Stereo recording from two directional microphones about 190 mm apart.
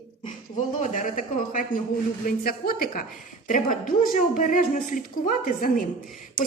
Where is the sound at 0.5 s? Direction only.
40° left (ahead or behind).